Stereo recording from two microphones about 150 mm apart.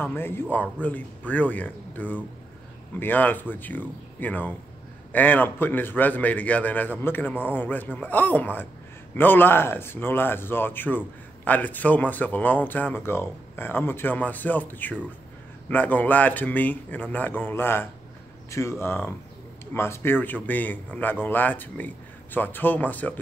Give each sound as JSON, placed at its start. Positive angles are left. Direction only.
{"t": 0.0, "sound": "speech", "side_deg": 15}